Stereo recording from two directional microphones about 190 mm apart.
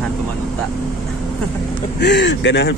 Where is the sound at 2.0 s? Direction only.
70° left (ahead or behind).